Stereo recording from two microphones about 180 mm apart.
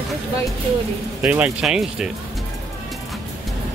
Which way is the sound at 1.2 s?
10° right (ahead or behind).